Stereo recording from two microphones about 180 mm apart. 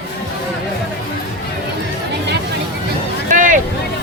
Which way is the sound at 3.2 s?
50° right (ahead or behind).